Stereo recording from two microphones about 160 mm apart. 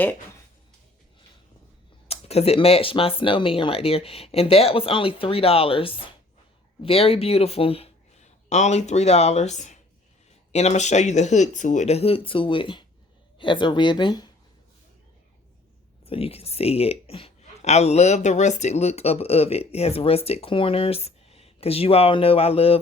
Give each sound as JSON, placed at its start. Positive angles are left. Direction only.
{"t": 2.0, "sound": "speech", "side_deg": 40}
{"t": 16.0, "sound": "speech", "side_deg": 35}